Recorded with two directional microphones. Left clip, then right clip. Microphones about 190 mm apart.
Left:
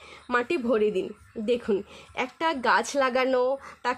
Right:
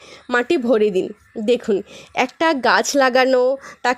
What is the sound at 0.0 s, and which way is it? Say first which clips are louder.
Speech: right 7 dB; 35° right (ahead or behind).